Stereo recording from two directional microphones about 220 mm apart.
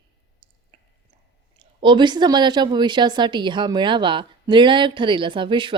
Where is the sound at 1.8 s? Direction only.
20° right (ahead or behind).